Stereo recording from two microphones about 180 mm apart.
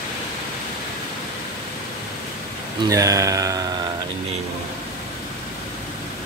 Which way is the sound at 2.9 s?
20° right (ahead or behind).